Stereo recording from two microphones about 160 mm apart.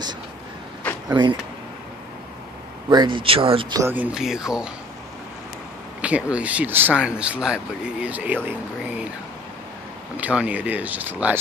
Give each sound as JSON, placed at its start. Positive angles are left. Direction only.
{"t": 1.0, "sound": "speech", "side_deg": -25}
{"t": 2.9, "sound": "speech", "side_deg": -30}
{"t": 3.7, "sound": "speech", "side_deg": -15}
{"t": 5.9, "sound": "a sound", "side_deg": -10}
{"t": 6.3, "sound": "speech", "side_deg": -10}
{"t": 10.1, "sound": "speech", "side_deg": -10}